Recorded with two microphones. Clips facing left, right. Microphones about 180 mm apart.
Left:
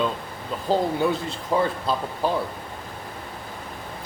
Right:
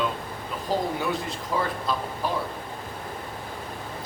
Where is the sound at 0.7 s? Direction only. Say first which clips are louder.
Left 5 dB; 30° left (ahead or behind).